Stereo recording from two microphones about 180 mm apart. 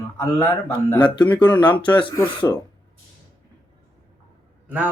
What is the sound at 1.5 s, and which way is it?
Speech, 25° left (ahead or behind).